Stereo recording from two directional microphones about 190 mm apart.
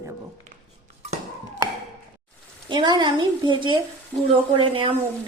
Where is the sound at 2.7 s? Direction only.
25° right (ahead or behind).